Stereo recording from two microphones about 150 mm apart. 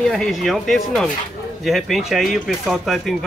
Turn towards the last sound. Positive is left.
turn(degrees=0)  # may be behind; listen again after turning